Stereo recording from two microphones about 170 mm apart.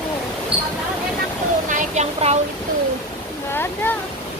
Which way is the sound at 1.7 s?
45° right (ahead or behind).